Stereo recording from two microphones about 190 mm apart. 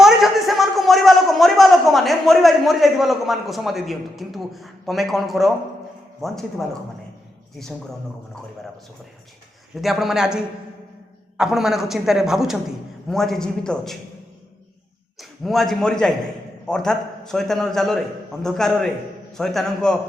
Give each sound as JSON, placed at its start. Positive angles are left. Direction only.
{"t": 0.0, "sound": "a sound", "side_deg": 0}
{"t": 6.2, "sound": "a woman's voice", "side_deg": 0}
{"t": 9.7, "sound": "a woman's voice", "side_deg": 0}
{"t": 15.2, "sound": "a man's voice", "side_deg": 0}